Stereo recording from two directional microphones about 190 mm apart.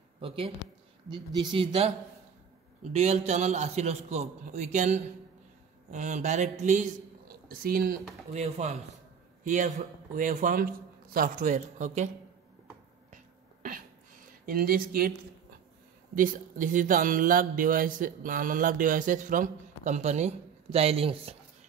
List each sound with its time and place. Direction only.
1.1 s a man's voice: 25° right (ahead or behind)
7.4 s a man's voice: 50° right (ahead or behind)
13.1 s a sound: 45° right (ahead or behind)
14.4 s speech: 50° right (ahead or behind)
16.2 s speech: 45° right (ahead or behind); by 21.4 s 30° right (ahead or behind)